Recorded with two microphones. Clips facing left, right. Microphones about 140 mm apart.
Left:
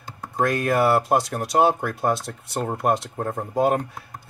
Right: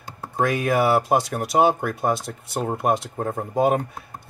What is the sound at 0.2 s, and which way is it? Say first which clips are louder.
Speech: even; centre (ahead or behind).